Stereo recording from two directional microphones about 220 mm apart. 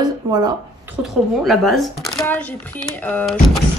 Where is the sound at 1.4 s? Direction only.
Centre (ahead or behind).